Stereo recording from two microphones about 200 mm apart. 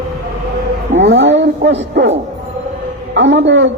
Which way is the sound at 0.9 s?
65° right (ahead or behind).